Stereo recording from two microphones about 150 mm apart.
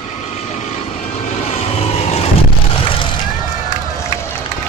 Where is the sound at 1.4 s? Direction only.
45° left (ahead or behind).